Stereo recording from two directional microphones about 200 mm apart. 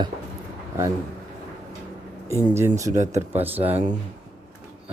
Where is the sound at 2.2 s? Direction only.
15° right (ahead or behind).